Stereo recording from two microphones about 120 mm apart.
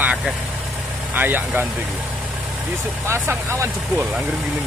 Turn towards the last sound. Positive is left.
turn(degrees=-20)  # may be behind; listen again after turning